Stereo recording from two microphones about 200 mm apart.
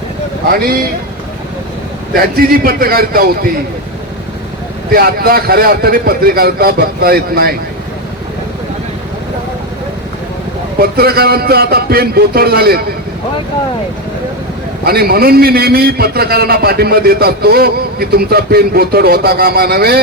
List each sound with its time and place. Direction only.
0.5 s a man's voice: 50° right (ahead or behind)
2.1 s a man's voice: 50° right (ahead or behind)
4.9 s a man's voice: 50° right (ahead or behind)
10.8 s a man's voice: 50° right (ahead or behind)
14.8 s a man's voice: 50° right (ahead or behind)